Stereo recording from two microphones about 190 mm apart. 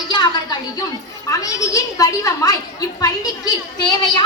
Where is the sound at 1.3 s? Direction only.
15° left (ahead or behind).